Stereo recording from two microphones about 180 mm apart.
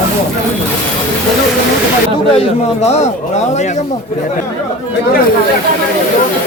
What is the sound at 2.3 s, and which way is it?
A man's voice, 35° left (ahead or behind).